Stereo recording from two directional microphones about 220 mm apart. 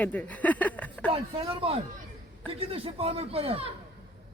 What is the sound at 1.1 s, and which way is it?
Speech, 25° right (ahead or behind).